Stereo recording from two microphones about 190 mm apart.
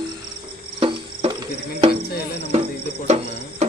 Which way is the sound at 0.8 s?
30° right (ahead or behind).